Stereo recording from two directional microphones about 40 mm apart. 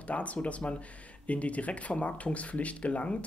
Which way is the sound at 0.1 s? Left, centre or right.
Left.